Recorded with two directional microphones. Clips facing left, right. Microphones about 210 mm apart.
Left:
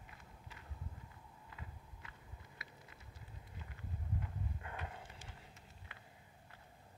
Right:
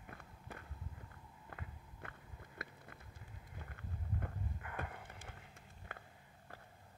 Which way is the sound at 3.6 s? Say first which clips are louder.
Even; 55° right (ahead or behind).